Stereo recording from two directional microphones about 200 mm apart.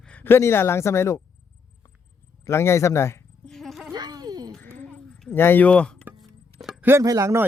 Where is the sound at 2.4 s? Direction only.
15° left (ahead or behind).